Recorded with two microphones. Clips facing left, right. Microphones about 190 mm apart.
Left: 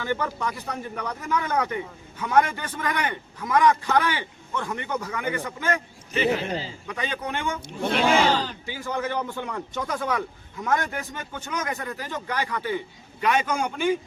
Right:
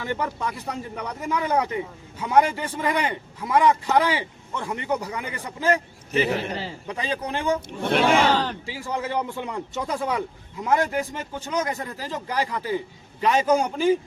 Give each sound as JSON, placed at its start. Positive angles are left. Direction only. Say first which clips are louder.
{"t": 0.0, "sound": "a man's voice", "louder": "even", "side_deg": -25}
{"t": 6.8, "sound": "speech", "louder": "right 2 dB", "side_deg": -30}
{"t": 7.9, "sound": "speech", "louder": "right 2 dB", "side_deg": -60}
{"t": 8.6, "sound": "a man's voice", "louder": "even", "side_deg": -30}
{"t": 10.8, "sound": "speech", "louder": "right 6 dB", "side_deg": -30}